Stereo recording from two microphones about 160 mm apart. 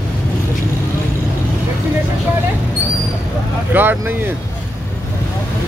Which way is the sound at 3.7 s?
10° right (ahead or behind).